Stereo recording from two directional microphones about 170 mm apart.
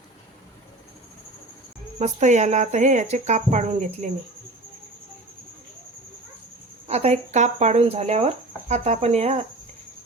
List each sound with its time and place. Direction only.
2.0 s speech: 40° right (ahead or behind)
6.8 s speech: 40° right (ahead or behind)